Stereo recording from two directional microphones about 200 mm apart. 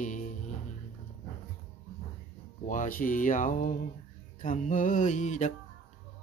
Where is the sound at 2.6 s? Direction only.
40° left (ahead or behind).